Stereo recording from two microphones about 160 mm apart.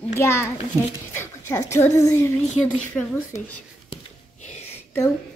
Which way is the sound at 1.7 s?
20° left (ahead or behind).